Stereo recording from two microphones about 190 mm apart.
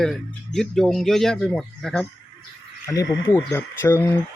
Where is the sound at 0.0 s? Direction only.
Centre (ahead or behind).